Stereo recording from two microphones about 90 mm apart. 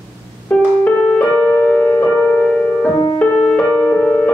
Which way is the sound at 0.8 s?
15° left (ahead or behind).